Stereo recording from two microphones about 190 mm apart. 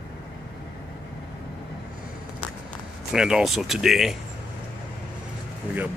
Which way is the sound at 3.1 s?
5° right (ahead or behind).